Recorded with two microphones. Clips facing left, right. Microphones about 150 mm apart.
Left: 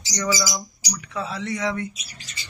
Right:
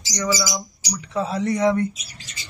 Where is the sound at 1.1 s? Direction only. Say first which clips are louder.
Right 6 dB; 40° right (ahead or behind).